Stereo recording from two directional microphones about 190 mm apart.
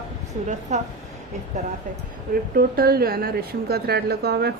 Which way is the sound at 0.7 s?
40° right (ahead or behind).